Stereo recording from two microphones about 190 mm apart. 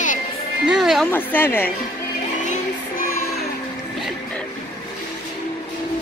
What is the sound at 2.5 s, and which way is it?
Music, 50° left (ahead or behind).